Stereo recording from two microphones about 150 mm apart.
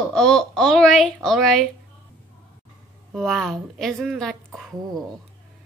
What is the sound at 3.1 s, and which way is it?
A woman's voice, centre (ahead or behind).